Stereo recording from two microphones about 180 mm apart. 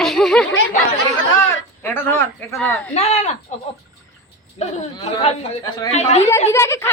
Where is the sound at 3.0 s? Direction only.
40° left (ahead or behind).